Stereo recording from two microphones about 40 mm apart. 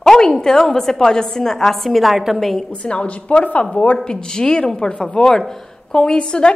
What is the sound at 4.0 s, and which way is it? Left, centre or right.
A woman's voice, centre.